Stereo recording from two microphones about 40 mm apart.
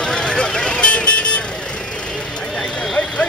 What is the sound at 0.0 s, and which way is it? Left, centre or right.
Vehicle, centre.